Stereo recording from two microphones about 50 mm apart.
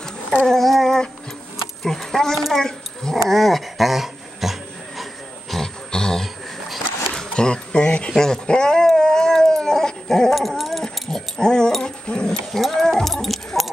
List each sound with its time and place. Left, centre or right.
0.5 s speech: centre
3.3 s dog: centre
5.5 s a sound: centre
7.2 s speech: centre
8.1 s speech: centre
8.8 s dog: centre
12.5 s a sound: centre